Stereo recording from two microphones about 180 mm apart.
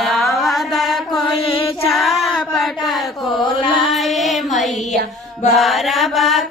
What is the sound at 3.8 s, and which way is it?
Music, centre (ahead or behind).